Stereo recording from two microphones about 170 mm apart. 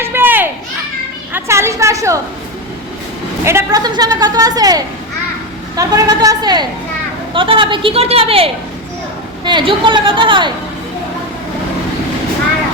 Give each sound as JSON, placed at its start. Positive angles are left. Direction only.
{"t": 0.0, "sound": "children playing", "side_deg": -10}
{"t": 1.3, "sound": "a woman's voice", "side_deg": -15}
{"t": 3.4, "sound": "a woman's voice", "side_deg": -15}